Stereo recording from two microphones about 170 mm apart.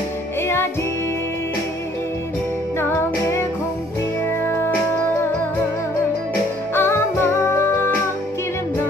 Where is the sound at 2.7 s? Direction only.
15° left (ahead or behind).